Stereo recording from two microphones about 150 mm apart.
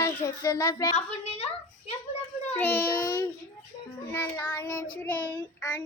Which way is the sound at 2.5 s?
15° left (ahead or behind).